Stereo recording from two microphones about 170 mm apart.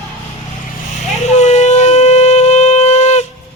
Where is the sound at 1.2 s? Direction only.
40° left (ahead or behind).